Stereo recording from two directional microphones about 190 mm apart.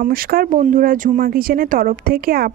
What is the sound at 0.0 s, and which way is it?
Speech, 50° right (ahead or behind).